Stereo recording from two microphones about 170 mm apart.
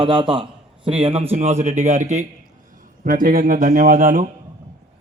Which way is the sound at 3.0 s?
55° right (ahead or behind).